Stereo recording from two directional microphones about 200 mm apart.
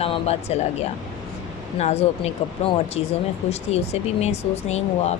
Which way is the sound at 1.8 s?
30° left (ahead or behind).